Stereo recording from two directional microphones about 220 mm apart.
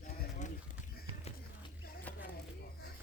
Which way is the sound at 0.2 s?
35° left (ahead or behind).